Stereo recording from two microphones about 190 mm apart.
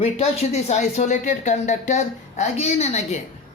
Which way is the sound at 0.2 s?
35° left (ahead or behind).